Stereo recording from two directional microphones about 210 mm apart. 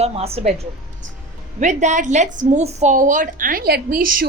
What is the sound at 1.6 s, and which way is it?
A woman's voice, 35° right (ahead or behind).